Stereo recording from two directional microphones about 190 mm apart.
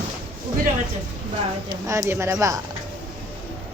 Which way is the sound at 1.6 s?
15° right (ahead or behind).